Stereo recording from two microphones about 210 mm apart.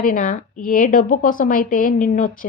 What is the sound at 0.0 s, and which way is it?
A woman's voice, 40° left (ahead or behind).